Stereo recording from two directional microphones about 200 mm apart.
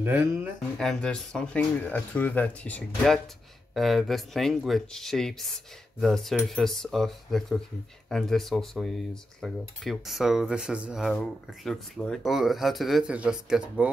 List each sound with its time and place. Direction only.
0.0 s speech: 10° right (ahead or behind)
0.7 s cutlery: 5° left (ahead or behind)